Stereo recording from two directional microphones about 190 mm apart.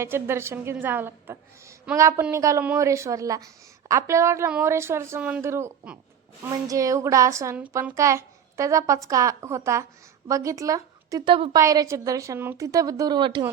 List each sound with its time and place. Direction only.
0.0 s a woman's voice: 15° right (ahead or behind)